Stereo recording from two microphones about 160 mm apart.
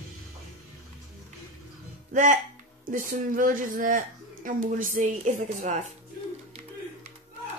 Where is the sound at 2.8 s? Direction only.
55° right (ahead or behind).